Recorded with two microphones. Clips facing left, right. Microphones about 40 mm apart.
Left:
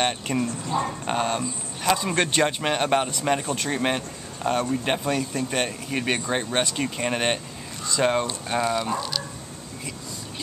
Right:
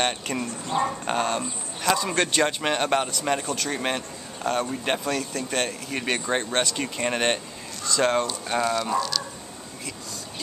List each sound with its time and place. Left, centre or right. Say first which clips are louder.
0.0 s speech: left 2 dB; centre
3.4 s speech: left 1 dB; left
3.7 s speech: left 2 dB; centre
5.0 s speech: left 2 dB; centre